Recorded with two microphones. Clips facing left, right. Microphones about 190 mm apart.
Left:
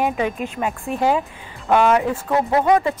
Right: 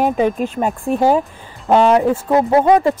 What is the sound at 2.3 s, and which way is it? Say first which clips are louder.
Speech: right 4 dB; 25° right (ahead or behind).